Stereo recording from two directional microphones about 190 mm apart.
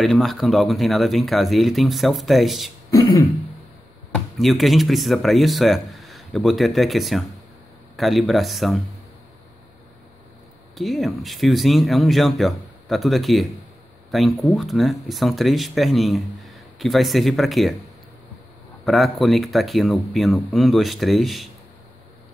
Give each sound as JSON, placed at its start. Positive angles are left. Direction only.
{"t": 0.0, "sound": "speech", "side_deg": 0}
{"t": 2.9, "sound": "throat clearing", "side_deg": 15}
{"t": 4.1, "sound": "speech", "side_deg": 0}
{"t": 10.7, "sound": "speech", "side_deg": 0}
{"t": 18.9, "sound": "speech", "side_deg": 0}